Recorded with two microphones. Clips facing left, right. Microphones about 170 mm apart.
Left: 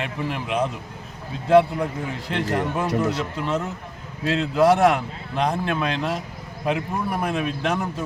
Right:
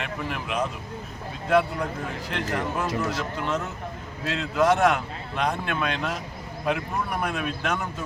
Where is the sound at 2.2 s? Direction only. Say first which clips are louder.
Left 5 dB; 35° left (ahead or behind).